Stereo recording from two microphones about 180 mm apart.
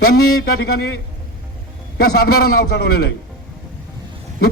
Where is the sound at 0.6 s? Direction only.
65° left (ahead or behind).